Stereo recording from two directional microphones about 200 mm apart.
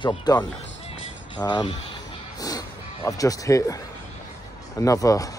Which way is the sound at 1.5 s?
20° left (ahead or behind).